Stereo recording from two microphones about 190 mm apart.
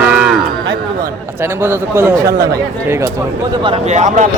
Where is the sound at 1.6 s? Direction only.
10° right (ahead or behind).